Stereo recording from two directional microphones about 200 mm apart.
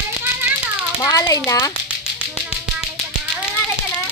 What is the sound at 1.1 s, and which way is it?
Speech, 15° left (ahead or behind).